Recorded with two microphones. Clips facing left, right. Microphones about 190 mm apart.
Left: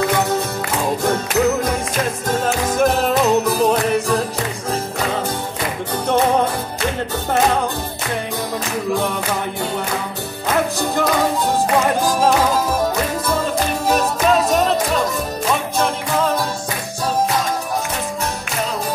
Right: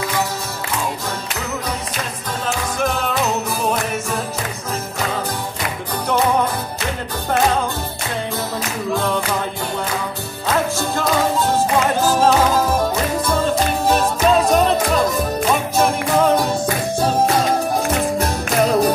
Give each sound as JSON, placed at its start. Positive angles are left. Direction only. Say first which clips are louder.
{"t": 2.4, "sound": "music", "louder": "left 4 dB", "side_deg": 40}